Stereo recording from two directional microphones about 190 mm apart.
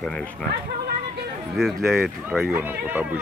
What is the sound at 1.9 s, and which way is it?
Speech, centre (ahead or behind).